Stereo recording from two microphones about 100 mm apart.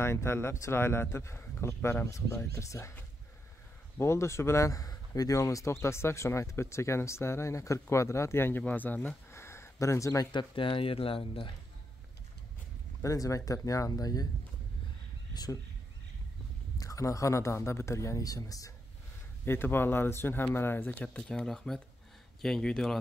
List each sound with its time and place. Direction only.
0.0 s a man's voice: 25° left (ahead or behind)
4.0 s a man's voice: 30° left (ahead or behind)
10.3 s speech: 60° left (ahead or behind)
13.0 s speech: 35° left (ahead or behind)
16.7 s speech: 35° left (ahead or behind)
19.4 s a man's voice: 25° left (ahead or behind); by 22.9 s 5° left (ahead or behind)